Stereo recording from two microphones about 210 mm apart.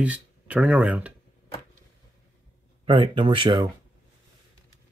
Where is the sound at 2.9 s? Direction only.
25° right (ahead or behind).